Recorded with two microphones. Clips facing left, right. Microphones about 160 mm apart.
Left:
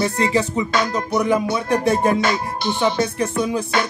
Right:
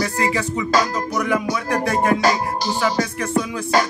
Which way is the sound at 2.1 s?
40° right (ahead or behind).